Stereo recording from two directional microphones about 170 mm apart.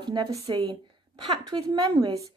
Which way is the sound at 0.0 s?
25° right (ahead or behind).